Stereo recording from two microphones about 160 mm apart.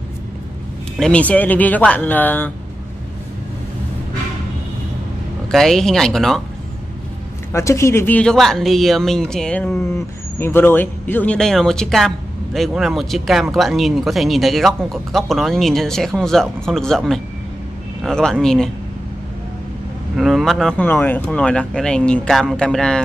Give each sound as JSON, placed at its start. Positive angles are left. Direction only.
{"t": 0.9, "sound": "speech", "side_deg": 5}
{"t": 5.5, "sound": "speech", "side_deg": 0}
{"t": 7.5, "sound": "speech", "side_deg": 15}
{"t": 20.2, "sound": "speech", "side_deg": 0}